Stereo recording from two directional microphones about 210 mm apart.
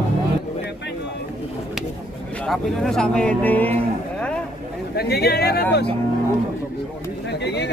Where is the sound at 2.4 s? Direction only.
Centre (ahead or behind).